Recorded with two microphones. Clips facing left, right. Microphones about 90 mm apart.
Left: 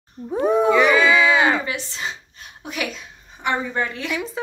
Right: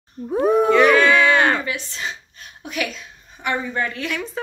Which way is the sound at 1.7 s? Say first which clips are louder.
Even; 20° left (ahead or behind).